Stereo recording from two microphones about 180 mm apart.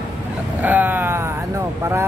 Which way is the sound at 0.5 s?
10° right (ahead or behind).